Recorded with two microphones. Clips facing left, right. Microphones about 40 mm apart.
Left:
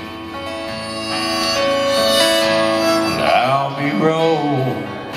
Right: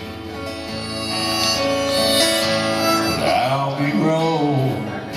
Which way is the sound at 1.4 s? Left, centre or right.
Left.